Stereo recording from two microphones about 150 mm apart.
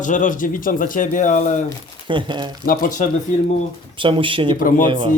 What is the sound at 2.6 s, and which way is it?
Speech, 70° left (ahead or behind).